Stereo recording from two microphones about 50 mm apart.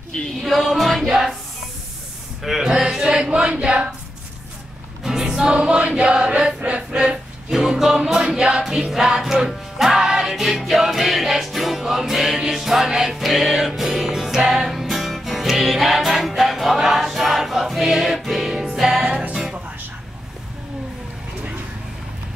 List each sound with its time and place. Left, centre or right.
0.1 s music: centre
0.5 s music: centre
1.0 s music: centre
2.4 s a sound: centre
5.0 s music: centre
5.5 s chant: right
7.5 s music: centre